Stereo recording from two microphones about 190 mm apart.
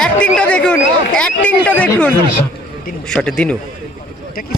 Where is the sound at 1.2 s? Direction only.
5° left (ahead or behind).